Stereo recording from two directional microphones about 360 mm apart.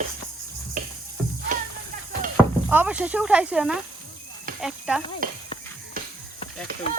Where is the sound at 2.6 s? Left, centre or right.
Centre.